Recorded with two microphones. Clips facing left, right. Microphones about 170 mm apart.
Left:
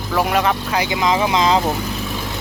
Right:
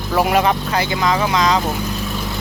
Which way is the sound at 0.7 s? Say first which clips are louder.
Even; 15° left (ahead or behind).